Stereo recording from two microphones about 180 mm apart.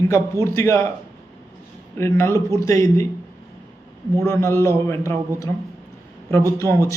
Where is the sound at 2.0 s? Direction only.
15° left (ahead or behind).